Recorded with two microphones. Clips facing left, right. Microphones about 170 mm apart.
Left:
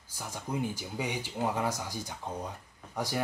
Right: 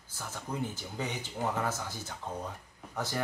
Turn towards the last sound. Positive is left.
turn(degrees=10)  # may be behind; listen again after turning